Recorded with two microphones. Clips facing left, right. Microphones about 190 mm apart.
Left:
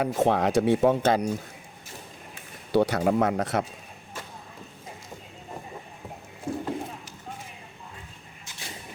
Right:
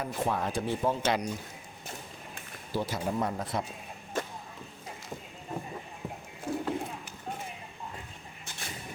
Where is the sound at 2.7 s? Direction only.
70° left (ahead or behind).